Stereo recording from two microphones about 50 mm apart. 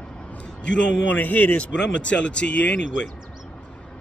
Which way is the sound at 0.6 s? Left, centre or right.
Left.